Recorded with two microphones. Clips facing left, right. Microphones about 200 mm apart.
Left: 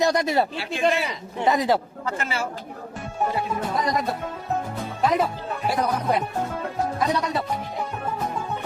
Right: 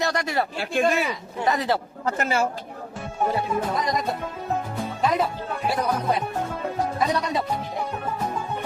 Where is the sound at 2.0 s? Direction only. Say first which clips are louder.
Right 4 dB; 40° right (ahead or behind).